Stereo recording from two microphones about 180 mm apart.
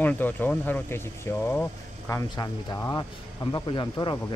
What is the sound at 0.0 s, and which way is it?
Speech, 10° left (ahead or behind).